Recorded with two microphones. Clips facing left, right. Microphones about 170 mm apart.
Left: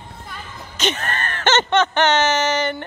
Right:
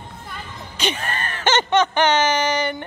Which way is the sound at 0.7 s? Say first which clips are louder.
Left 2 dB; 10° right (ahead or behind).